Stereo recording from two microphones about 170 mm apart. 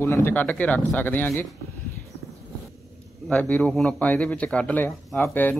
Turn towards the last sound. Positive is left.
turn(degrees=10)  # may be behind; listen again after turning